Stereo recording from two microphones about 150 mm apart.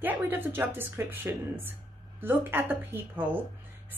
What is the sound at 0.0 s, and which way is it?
Speech, 15° right (ahead or behind).